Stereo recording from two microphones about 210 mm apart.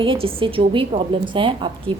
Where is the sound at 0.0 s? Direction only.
25° right (ahead or behind).